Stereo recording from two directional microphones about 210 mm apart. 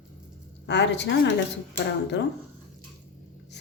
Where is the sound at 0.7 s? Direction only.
55° left (ahead or behind).